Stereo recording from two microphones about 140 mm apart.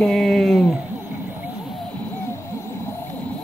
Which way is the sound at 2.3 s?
20° left (ahead or behind).